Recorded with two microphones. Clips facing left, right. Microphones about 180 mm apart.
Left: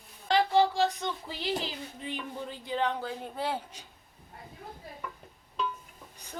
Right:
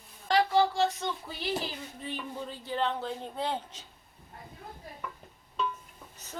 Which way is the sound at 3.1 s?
5° left (ahead or behind).